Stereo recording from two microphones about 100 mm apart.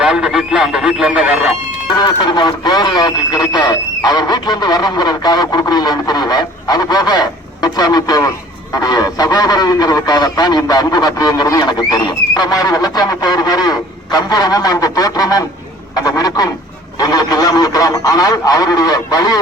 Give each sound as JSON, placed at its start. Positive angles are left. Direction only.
{"t": 0.0, "sound": "speech", "side_deg": -5}
{"t": 2.0, "sound": "speech", "side_deg": 45}